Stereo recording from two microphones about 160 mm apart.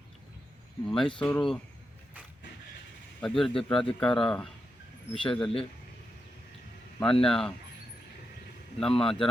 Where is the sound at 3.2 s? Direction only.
5° left (ahead or behind).